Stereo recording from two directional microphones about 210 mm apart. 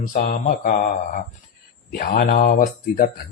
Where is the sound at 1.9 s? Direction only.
45° left (ahead or behind).